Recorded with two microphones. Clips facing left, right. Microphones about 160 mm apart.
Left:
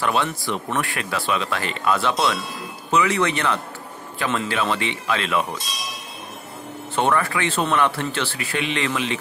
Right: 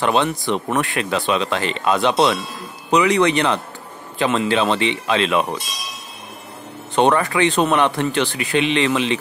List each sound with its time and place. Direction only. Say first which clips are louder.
0.0 s speech: right 4 dB; 20° right (ahead or behind)
7.0 s speech: right 5 dB; 20° right (ahead or behind)